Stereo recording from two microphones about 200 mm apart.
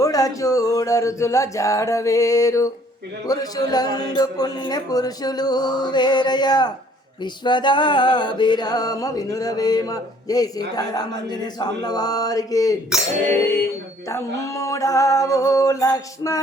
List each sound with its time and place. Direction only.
0.0 s speech: 15° left (ahead or behind)
3.2 s music: 20° left (ahead or behind)
14.1 s speech: 15° left (ahead or behind)